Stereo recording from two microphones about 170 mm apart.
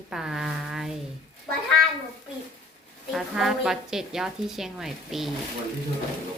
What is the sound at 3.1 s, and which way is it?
Speech, centre (ahead or behind).